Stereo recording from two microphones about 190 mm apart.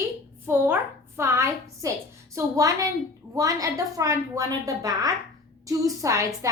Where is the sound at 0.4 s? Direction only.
10° right (ahead or behind).